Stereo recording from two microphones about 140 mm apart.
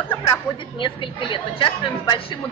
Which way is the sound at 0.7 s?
35° left (ahead or behind).